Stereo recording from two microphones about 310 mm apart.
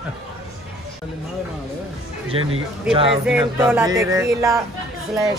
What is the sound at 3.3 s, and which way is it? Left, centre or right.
Speech, centre.